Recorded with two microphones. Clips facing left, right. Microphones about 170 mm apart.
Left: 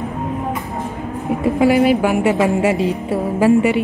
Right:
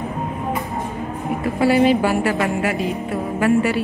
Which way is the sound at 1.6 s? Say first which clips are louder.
Left 1 dB; 10° left (ahead or behind).